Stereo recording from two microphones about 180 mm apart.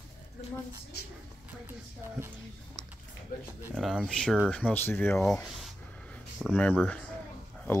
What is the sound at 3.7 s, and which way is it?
Speech, centre (ahead or behind).